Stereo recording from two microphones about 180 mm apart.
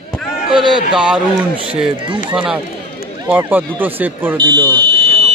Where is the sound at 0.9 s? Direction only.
5° right (ahead or behind).